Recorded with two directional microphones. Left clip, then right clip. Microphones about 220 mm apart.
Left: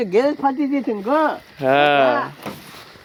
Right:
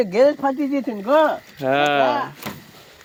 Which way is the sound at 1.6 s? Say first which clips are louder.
Left 3 dB; 5° left (ahead or behind).